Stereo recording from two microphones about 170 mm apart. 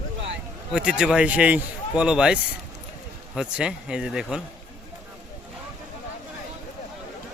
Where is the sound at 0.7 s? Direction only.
5° right (ahead or behind).